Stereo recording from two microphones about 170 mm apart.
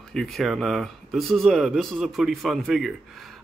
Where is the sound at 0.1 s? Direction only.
Centre (ahead or behind).